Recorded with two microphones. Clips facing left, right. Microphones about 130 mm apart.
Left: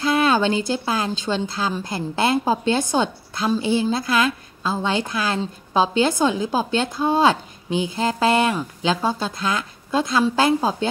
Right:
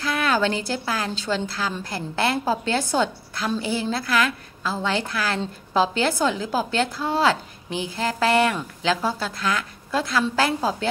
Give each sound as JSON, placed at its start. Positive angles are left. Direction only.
{"t": 0.0, "sound": "speech", "side_deg": 25}